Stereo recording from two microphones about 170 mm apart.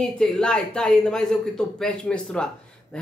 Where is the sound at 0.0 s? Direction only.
5° left (ahead or behind).